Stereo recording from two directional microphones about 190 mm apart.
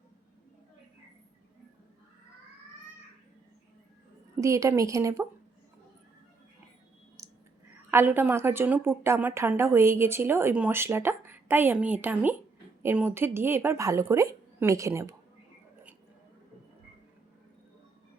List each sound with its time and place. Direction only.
4.4 s a woman's voice: 15° right (ahead or behind)
7.2 s whispering: 15° right (ahead or behind)
7.9 s a woman's voice: 10° right (ahead or behind)